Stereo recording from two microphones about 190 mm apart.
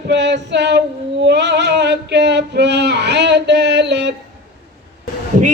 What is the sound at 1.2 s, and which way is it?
Male singing, 65° right (ahead or behind).